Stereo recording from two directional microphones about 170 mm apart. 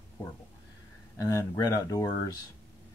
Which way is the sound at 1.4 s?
20° left (ahead or behind).